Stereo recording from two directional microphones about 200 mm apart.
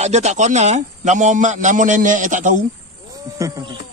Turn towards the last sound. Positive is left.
turn(degrees=-15)  # may be behind; listen again after turning